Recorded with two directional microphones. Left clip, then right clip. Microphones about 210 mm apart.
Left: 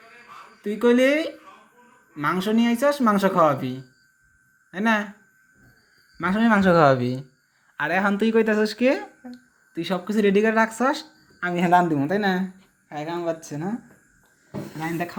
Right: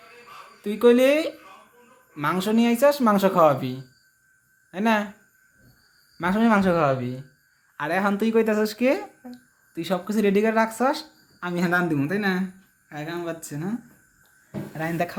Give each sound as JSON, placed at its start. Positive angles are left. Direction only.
{"t": 0.6, "sound": "speech", "side_deg": -5}
{"t": 6.1, "sound": "speech", "side_deg": -5}
{"t": 6.7, "sound": "speech", "side_deg": 25}
{"t": 7.8, "sound": "speech", "side_deg": 5}
{"t": 14.8, "sound": "speech", "side_deg": -20}